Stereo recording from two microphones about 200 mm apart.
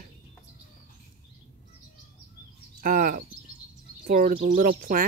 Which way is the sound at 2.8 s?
45° right (ahead or behind).